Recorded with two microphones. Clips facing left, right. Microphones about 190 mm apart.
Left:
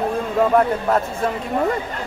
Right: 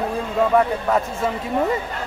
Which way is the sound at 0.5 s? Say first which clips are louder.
Right 1 dB; centre (ahead or behind).